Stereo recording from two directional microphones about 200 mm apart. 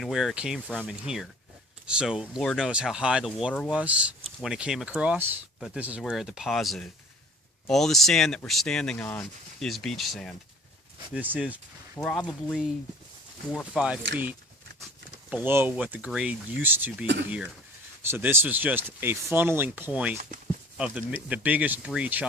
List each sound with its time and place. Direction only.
0.0 s speech: centre (ahead or behind)
12.0 s speech: 5° left (ahead or behind)
13.7 s speech: 5° right (ahead or behind)
15.3 s speech: 10° right (ahead or behind)